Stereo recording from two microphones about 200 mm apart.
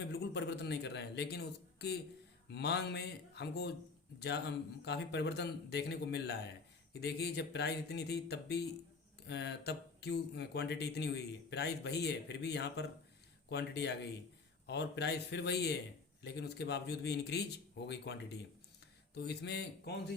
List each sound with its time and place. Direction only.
0.0 s a man's voice: 55° left (ahead or behind)